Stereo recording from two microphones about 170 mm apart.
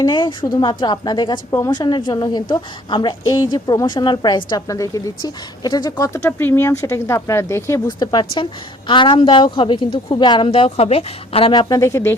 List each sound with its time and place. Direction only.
0.0 s a woman's voice: 25° left (ahead or behind)
11.7 s speech: 15° left (ahead or behind)